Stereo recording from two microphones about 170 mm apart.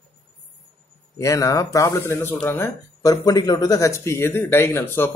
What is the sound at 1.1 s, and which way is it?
Speech, 20° left (ahead or behind).